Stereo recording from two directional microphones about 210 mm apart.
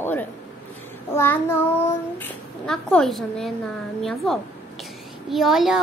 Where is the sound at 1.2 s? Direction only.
10° left (ahead or behind).